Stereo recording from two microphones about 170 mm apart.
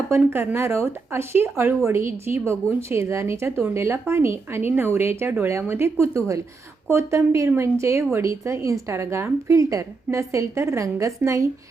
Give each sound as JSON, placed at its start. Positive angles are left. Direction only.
{"t": 0.1, "sound": "speech", "side_deg": -15}